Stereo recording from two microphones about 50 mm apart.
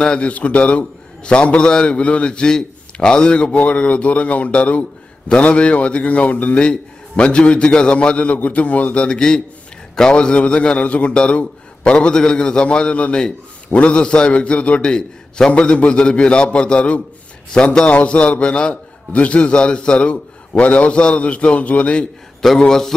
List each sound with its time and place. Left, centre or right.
0.2 s a man's voice: left
9.0 s a man's voice: centre
22.4 s a man's voice: centre